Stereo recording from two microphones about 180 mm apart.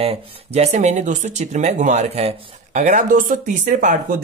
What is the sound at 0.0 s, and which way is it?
Speech, 35° right (ahead or behind).